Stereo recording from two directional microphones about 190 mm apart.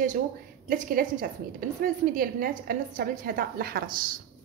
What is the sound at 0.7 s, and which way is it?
A woman's voice, 50° right (ahead or behind).